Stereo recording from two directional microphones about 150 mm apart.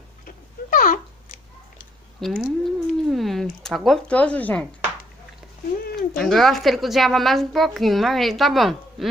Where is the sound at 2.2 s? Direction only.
Centre (ahead or behind).